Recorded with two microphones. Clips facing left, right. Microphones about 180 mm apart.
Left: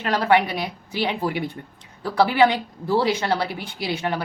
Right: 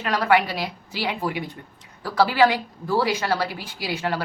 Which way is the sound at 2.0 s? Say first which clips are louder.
Left 1 dB; 20° left (ahead or behind).